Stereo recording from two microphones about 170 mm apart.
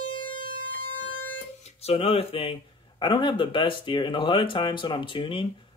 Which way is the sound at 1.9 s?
35° left (ahead or behind).